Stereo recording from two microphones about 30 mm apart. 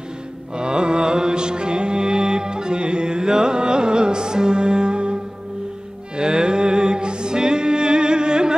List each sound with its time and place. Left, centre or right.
0.6 s music: right
6.1 s music: right